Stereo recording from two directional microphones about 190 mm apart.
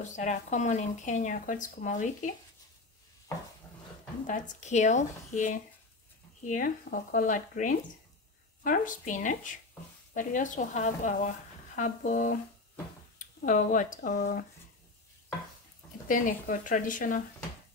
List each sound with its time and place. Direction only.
0.0 s speech: 40° left (ahead or behind)
4.3 s speech: 40° left (ahead or behind)
16.1 s speech: 45° left (ahead or behind)